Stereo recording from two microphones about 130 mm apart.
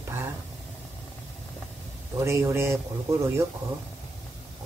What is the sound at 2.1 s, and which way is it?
Speech, 20° right (ahead or behind).